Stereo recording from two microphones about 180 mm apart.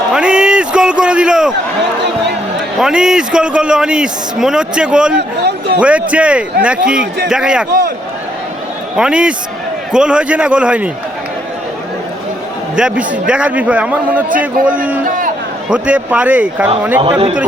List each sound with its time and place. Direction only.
0.1 s a sound: 5° right (ahead or behind)
2.8 s a man's voice: 5° right (ahead or behind)
5.4 s a man's voice: 65° right (ahead or behind)
5.8 s a man's voice: 5° right (ahead or behind)
7.7 s a man's voice: 65° right (ahead or behind)
9.0 s a man's voice: 5° right (ahead or behind)
12.7 s a man's voice: 5° right (ahead or behind)
15.7 s a man's voice: 5° right (ahead or behind)
17.0 s a man's voice: 30° right (ahead or behind)